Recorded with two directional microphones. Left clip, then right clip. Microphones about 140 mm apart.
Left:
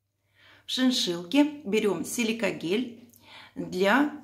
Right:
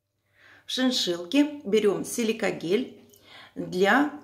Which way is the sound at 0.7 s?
10° left (ahead or behind).